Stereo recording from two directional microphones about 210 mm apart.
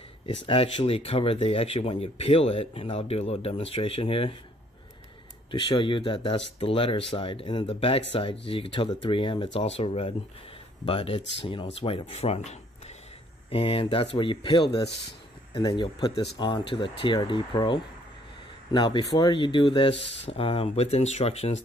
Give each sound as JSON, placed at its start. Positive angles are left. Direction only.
{"t": 0.5, "sound": "speech", "side_deg": 25}
{"t": 5.5, "sound": "speech", "side_deg": 25}
{"t": 20.0, "sound": "speech", "side_deg": 60}
{"t": 20.2, "sound": "speech", "side_deg": 25}